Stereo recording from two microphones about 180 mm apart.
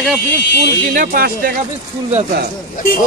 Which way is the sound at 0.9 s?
55° right (ahead or behind).